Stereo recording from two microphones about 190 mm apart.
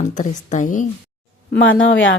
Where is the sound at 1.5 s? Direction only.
90° left.